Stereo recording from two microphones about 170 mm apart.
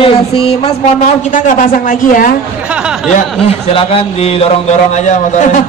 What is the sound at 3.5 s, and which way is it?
A man's voice, 35° left (ahead or behind).